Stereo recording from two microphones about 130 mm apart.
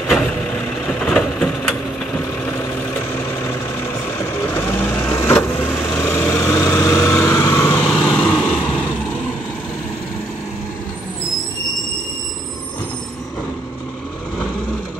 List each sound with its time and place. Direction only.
0.1 s vehicle: 5° left (ahead or behind)
4.4 s vehicle: 20° left (ahead or behind)
5.6 s a sound: 10° left (ahead or behind)
5.9 s vehicle: 20° left (ahead or behind)
7.9 s vehicle: 5° left (ahead or behind)